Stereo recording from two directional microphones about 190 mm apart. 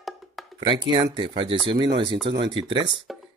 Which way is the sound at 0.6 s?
25° right (ahead or behind).